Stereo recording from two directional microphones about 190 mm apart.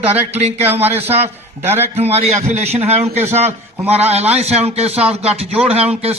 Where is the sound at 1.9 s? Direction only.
35° right (ahead or behind).